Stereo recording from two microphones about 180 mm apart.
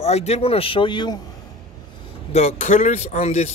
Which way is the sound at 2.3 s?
40° left (ahead or behind).